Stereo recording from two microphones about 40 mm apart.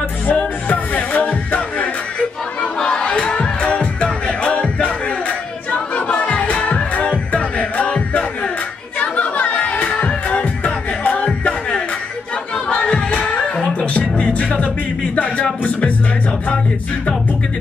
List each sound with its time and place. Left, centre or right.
0.3 s music: left
2.6 s music: left
9.0 s music: left
11.2 s music: left